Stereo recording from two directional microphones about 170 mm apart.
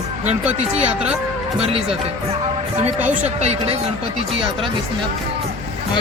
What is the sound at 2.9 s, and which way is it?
Speech, 10° right (ahead or behind).